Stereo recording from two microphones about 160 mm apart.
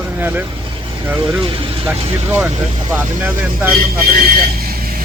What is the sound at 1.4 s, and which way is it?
Speech, 35° right (ahead or behind).